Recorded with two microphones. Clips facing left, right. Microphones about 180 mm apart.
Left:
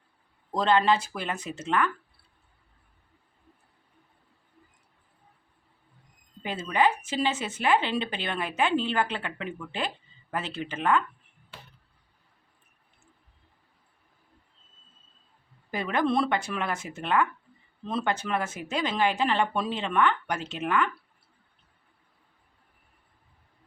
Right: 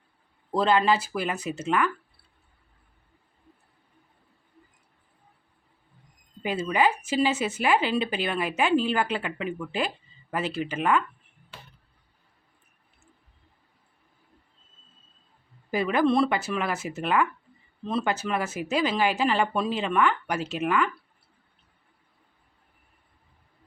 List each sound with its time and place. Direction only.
0.5 s speech: 5° right (ahead or behind)
6.4 s speech: 10° right (ahead or behind)
15.7 s speech: 5° right (ahead or behind)